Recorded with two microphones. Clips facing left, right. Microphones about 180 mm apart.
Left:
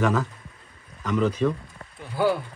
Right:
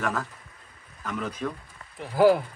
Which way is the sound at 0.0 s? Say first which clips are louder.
Left 6 dB; centre (ahead or behind).